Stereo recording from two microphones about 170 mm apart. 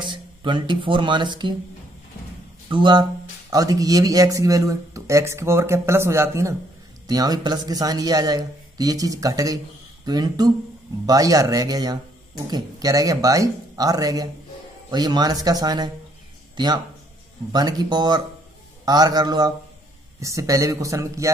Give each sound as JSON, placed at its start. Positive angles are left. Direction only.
{"t": 0.0, "sound": "speech", "side_deg": -30}
{"t": 2.7, "sound": "speech", "side_deg": -25}